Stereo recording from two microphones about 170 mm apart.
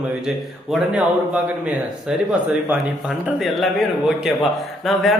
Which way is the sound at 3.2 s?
Centre (ahead or behind).